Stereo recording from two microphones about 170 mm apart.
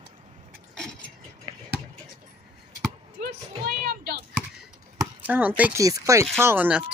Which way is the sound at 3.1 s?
70° right (ahead or behind).